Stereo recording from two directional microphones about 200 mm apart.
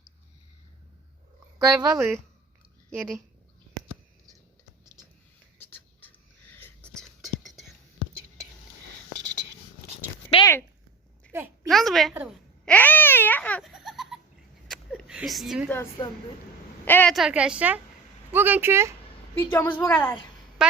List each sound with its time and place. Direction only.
1.5 s speech: 15° right (ahead or behind)
5.5 s whispering: 10° left (ahead or behind)
10.3 s a sound: 15° left (ahead or behind)
11.3 s a sound: 10° right (ahead or behind)
11.7 s a woman's voice: centre (ahead or behind)
12.6 s babbling: 10° left (ahead or behind)
14.7 s a sound: centre (ahead or behind)
15.7 s a woman's voice: 15° left (ahead or behind); by 18.9 s 10° right (ahead or behind)
19.4 s a woman's voice: 10° left (ahead or behind)
20.0 s a woman's voice: 20° left (ahead or behind)
20.6 s fowl: 5° right (ahead or behind)